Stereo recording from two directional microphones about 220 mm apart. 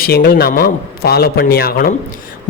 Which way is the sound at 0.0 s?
45° left (ahead or behind).